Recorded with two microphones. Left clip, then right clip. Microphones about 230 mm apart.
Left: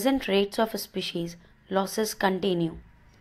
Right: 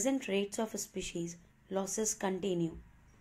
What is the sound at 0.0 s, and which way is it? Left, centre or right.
Speech, centre.